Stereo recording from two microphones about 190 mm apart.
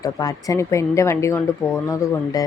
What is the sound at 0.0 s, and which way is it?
Speech, 20° left (ahead or behind).